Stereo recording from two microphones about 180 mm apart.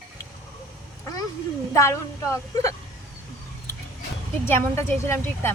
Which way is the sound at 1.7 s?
15° left (ahead or behind).